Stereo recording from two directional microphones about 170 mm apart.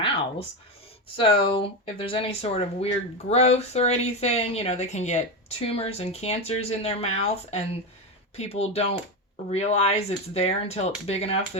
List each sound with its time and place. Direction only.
0.0 s speech: 30° left (ahead or behind)